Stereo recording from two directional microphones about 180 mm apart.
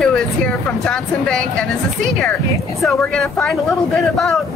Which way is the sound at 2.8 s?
Centre (ahead or behind).